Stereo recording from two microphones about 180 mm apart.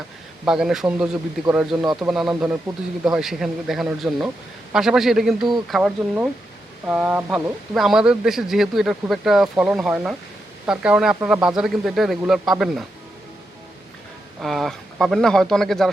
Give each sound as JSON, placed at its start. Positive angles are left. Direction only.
{"t": 0.4, "sound": "speech", "side_deg": -5}
{"t": 1.8, "sound": "a man's voice", "side_deg": -20}
{"t": 2.7, "sound": "speech", "side_deg": -5}
{"t": 14.4, "sound": "speech", "side_deg": 0}